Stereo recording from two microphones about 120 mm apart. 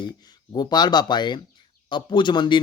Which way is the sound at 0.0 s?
35° left (ahead or behind).